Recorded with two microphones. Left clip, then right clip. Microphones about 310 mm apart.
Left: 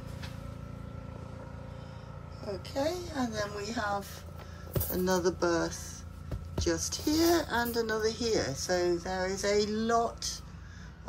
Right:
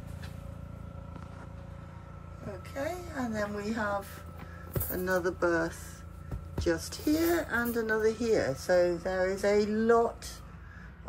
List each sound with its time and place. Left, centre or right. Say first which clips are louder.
2.7 s a woman's voice: left 3 dB; centre